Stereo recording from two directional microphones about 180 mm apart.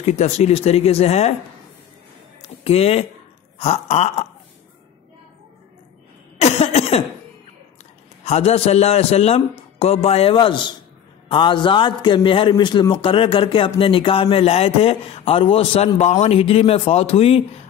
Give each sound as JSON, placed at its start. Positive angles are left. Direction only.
{"t": 0.0, "sound": "a man's voice", "side_deg": 40}
{"t": 2.4, "sound": "a sound", "side_deg": 35}
{"t": 3.5, "sound": "a man's voice", "side_deg": 35}
{"t": 6.3, "sound": "cough", "side_deg": 35}
{"t": 8.3, "sound": "a man's voice", "side_deg": 35}